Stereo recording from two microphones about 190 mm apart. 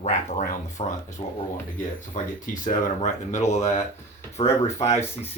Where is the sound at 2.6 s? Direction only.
40° left (ahead or behind).